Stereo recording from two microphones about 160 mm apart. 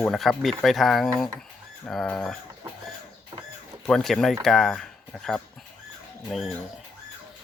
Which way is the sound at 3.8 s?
5° left (ahead or behind).